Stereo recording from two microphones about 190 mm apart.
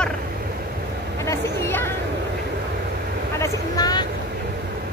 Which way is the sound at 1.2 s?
15° left (ahead or behind).